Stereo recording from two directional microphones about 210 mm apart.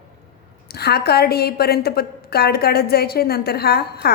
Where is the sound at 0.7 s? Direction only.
50° left (ahead or behind).